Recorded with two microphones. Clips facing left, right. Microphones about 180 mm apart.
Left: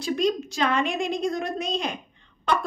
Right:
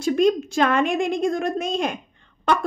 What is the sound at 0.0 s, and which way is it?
A woman's voice, 50° right (ahead or behind).